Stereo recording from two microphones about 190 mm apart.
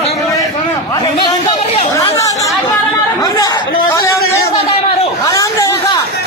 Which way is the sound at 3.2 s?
20° left (ahead or behind).